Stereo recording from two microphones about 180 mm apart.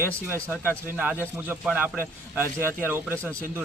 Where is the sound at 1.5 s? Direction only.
5° right (ahead or behind).